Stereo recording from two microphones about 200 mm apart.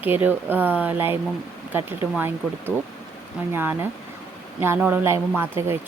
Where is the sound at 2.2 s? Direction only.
10° right (ahead or behind).